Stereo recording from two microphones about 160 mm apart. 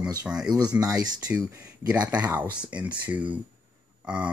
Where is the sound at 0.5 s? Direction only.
20° right (ahead or behind).